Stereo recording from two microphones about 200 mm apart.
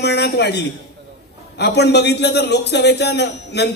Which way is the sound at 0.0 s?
55° left (ahead or behind).